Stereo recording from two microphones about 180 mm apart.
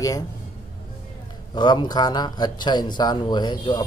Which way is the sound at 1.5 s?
25° left (ahead or behind).